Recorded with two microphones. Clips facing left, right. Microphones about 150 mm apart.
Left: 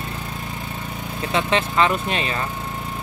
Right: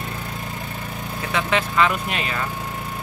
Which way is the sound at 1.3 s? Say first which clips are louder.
Left 1 dB; 25° left (ahead or behind).